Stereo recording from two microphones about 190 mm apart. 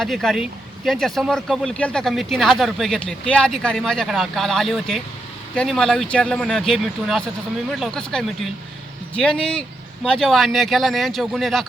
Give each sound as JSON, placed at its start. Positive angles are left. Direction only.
{"t": 0.0, "sound": "speech", "side_deg": 0}